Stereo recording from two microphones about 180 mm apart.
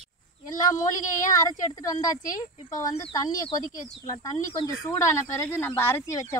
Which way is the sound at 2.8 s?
20° left (ahead or behind).